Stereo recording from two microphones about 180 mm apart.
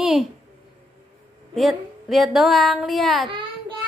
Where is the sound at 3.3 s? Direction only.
30° right (ahead or behind).